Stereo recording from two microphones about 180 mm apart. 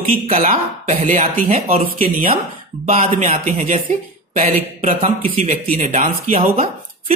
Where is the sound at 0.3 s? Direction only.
35° right (ahead or behind).